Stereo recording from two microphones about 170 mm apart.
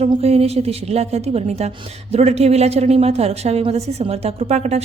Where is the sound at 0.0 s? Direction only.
35° right (ahead or behind).